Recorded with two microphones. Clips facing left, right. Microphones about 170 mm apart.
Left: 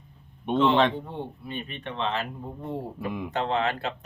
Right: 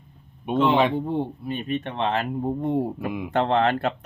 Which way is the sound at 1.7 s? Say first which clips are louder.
Right 5 dB; 45° right (ahead or behind).